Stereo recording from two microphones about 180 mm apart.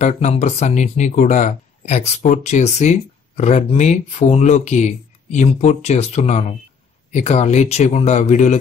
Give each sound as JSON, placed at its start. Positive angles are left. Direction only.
{"t": 0.0, "sound": "speech", "side_deg": 40}